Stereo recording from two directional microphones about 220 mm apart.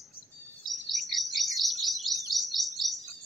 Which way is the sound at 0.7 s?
Centre (ahead or behind).